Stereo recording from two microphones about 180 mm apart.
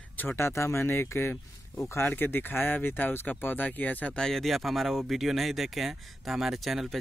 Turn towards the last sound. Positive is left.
turn(degrees=0)  # may be behind; listen again after turning